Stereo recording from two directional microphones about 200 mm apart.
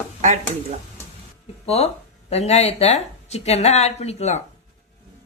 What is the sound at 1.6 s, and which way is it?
A woman's voice, 30° left (ahead or behind).